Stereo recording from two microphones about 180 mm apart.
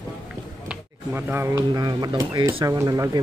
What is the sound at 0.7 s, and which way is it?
Speech, 10° right (ahead or behind).